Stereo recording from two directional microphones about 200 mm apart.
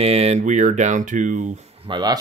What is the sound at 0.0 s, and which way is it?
Speech, 30° right (ahead or behind).